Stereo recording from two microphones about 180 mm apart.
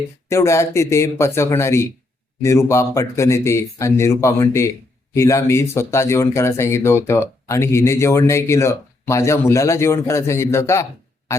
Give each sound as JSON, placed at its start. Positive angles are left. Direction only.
{"t": 0.3, "sound": "speech", "side_deg": 15}